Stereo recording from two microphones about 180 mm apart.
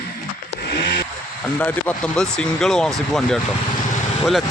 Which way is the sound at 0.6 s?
60° left (ahead or behind).